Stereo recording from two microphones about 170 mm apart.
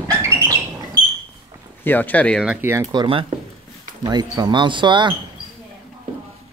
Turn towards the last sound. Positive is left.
turn(degrees=-25)  # may be behind; listen again after turning